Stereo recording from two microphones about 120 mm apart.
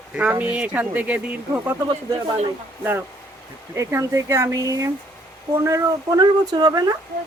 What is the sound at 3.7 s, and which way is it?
Speech, 25° right (ahead or behind).